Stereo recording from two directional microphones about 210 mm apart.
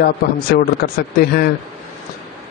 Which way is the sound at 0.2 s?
45° left (ahead or behind).